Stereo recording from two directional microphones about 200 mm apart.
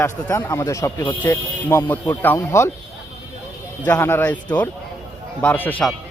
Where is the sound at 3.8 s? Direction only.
10° left (ahead or behind).